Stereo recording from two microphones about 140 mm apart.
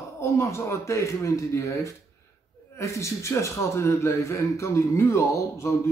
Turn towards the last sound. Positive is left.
turn(degrees=20)  # may be behind; listen again after turning